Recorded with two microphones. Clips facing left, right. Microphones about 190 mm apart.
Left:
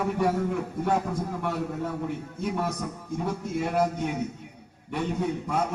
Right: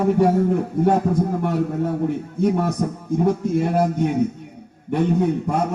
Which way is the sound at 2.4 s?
50° right (ahead or behind).